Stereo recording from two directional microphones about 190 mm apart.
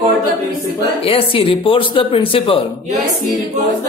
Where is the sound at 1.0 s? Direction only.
30° left (ahead or behind).